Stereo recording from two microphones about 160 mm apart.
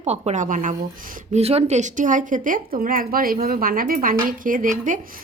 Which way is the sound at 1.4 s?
40° right (ahead or behind).